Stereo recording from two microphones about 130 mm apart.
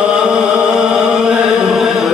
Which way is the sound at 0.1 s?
5° right (ahead or behind).